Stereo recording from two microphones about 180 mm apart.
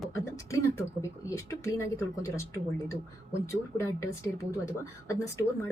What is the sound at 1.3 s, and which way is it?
Speech, 15° left (ahead or behind).